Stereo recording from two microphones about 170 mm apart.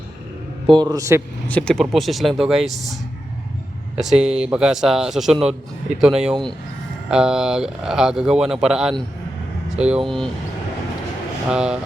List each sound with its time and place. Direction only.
0.7 s a man's voice: 25° right (ahead or behind)
1.5 s speech: 5° left (ahead or behind)
11.4 s speech: 5° right (ahead or behind)